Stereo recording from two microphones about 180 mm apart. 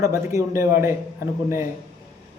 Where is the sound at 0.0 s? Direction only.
15° right (ahead or behind).